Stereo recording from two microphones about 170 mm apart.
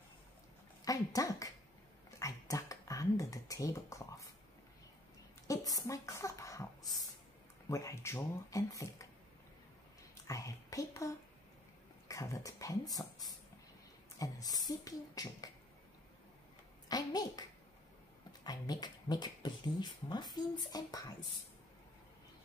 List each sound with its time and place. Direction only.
0.8 s speech: 20° left (ahead or behind)
2.0 s a sound: 20° left (ahead or behind)
5.5 s a sound: 20° left (ahead or behind)
7.6 s speech: 15° left (ahead or behind)
10.2 s speech: 20° left (ahead or behind)
16.9 s speech: 25° left (ahead or behind)